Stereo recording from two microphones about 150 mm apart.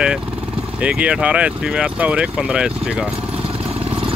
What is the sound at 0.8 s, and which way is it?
Speech, 10° right (ahead or behind).